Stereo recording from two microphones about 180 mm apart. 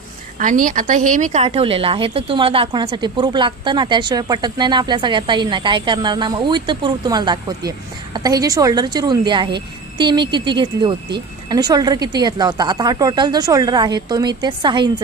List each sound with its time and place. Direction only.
0.3 s speech: 50° right (ahead or behind); by 15.0 s 25° right (ahead or behind)